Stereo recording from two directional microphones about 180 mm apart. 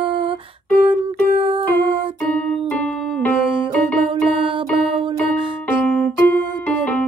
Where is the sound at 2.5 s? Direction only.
5° left (ahead or behind).